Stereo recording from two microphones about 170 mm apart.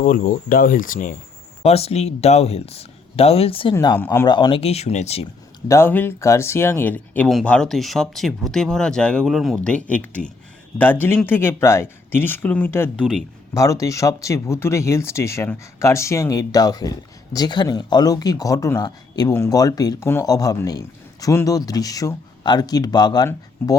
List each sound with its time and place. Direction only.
0.0 s speech: 55° left (ahead or behind)
1.6 s speech: 35° left (ahead or behind)
3.8 s speech: 15° left (ahead or behind)
4.3 s speech: 25° left (ahead or behind)
5.6 s speech: 15° left (ahead or behind)